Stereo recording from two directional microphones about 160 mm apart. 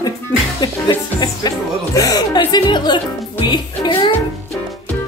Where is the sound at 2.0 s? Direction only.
25° left (ahead or behind).